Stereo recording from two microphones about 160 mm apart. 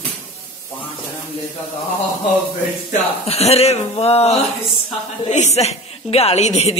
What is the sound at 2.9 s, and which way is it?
A woman's voice, 40° left (ahead or behind).